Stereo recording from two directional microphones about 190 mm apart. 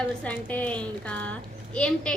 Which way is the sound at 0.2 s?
5° left (ahead or behind).